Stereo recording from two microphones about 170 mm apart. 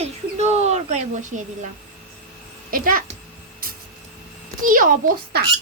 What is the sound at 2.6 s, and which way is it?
Speech, 55° right (ahead or behind).